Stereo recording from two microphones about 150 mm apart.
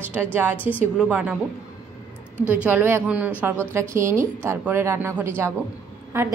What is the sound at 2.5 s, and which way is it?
A woman's voice, 10° right (ahead or behind).